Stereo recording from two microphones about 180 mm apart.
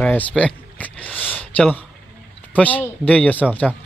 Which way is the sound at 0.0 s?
5° left (ahead or behind).